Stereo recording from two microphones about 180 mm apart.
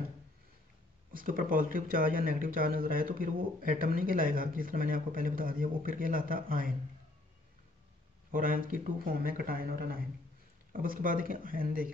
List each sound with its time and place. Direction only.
1.1 s speech: 50° right (ahead or behind)
8.3 s speech: 50° right (ahead or behind)